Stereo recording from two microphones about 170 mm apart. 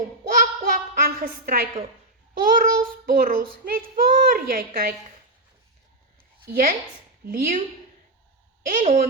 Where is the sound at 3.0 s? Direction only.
55° right (ahead or behind).